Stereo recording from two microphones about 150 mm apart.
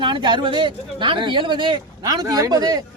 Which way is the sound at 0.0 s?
30° right (ahead or behind).